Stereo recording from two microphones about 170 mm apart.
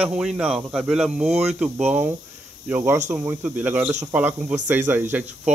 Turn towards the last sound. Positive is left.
turn(degrees=-10)  # may be behind; listen again after turning